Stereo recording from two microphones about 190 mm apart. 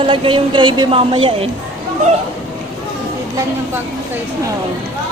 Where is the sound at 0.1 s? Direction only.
25° right (ahead or behind).